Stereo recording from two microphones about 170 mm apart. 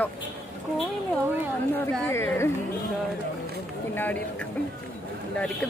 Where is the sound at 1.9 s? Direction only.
10° left (ahead or behind).